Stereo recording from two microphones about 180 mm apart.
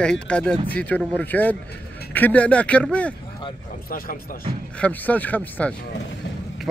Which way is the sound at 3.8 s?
55° left (ahead or behind).